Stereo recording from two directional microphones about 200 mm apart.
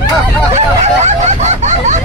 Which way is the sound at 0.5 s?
35° right (ahead or behind).